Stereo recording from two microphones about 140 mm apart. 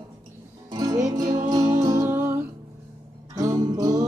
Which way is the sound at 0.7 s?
25° right (ahead or behind).